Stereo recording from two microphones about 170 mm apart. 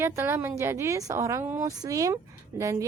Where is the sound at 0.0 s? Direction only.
15° right (ahead or behind).